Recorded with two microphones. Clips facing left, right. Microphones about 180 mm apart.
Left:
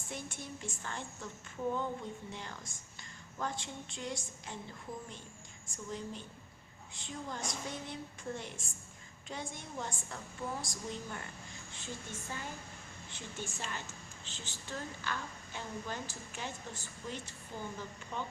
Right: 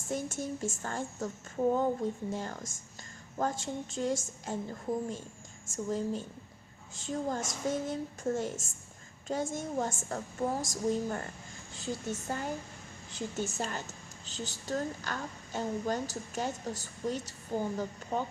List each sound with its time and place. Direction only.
0.1 s a woman's voice: 45° right (ahead or behind)